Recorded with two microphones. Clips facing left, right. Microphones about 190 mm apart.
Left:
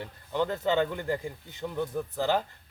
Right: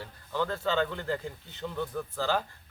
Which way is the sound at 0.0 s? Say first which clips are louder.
Left 3 dB; 20° left (ahead or behind).